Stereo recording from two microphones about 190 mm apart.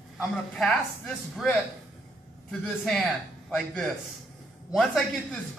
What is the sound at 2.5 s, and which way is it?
Speech, centre (ahead or behind).